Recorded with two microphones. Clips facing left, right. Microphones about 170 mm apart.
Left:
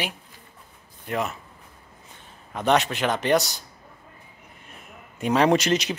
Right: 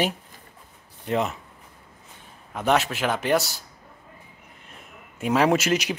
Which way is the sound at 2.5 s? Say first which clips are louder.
Left 1 dB; 5° right (ahead or behind).